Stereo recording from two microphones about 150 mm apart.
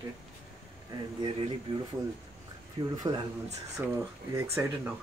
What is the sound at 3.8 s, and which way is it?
Speech, 15° right (ahead or behind).